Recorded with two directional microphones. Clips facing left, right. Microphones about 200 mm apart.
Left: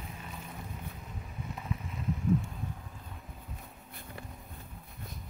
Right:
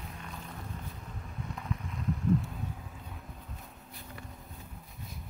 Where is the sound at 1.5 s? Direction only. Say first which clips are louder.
Even; 5° left (ahead or behind).